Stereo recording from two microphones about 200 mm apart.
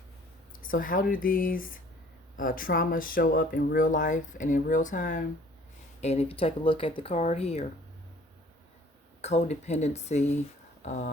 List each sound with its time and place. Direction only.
0.6 s speech: 45° left (ahead or behind)
9.2 s speech: 35° left (ahead or behind)